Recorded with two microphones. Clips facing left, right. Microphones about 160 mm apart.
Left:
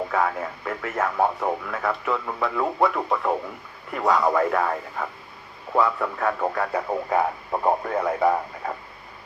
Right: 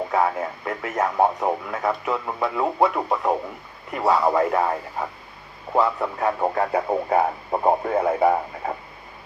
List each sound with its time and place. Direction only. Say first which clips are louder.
0.1 s speech: right 2 dB; 25° right (ahead or behind)